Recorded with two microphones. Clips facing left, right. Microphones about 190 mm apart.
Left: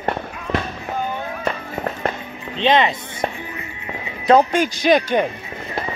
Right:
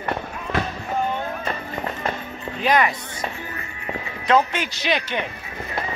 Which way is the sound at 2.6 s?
25° left (ahead or behind).